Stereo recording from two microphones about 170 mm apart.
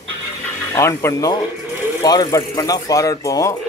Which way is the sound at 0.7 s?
15° left (ahead or behind).